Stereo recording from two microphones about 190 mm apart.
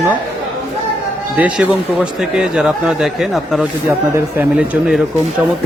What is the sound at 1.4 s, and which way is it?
Speech, 5° right (ahead or behind).